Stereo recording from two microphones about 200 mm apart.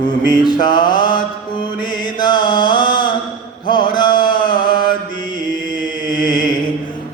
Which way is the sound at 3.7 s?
25° left (ahead or behind).